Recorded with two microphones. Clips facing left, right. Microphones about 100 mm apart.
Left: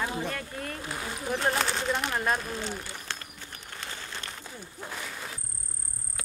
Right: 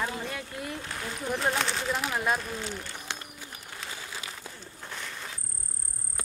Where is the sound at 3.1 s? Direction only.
15° right (ahead or behind).